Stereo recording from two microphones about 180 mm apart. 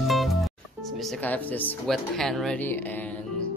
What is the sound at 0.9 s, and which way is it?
Speech, centre (ahead or behind).